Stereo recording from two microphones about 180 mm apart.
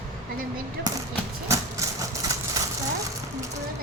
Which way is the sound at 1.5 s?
15° right (ahead or behind).